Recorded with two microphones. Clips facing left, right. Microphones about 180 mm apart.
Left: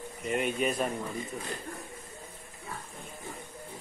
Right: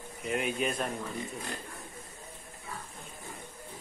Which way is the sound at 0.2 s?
Centre (ahead or behind).